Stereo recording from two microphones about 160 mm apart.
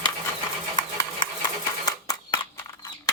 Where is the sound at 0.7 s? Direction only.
30° left (ahead or behind).